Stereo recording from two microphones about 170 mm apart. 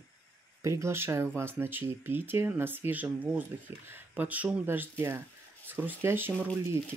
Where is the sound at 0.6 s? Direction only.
15° right (ahead or behind).